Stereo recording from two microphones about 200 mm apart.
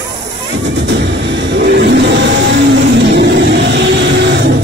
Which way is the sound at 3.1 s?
60° right (ahead or behind).